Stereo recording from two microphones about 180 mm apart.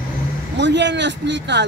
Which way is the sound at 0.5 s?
75° right (ahead or behind).